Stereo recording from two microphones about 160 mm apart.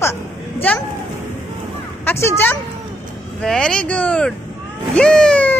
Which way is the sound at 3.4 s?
5° left (ahead or behind).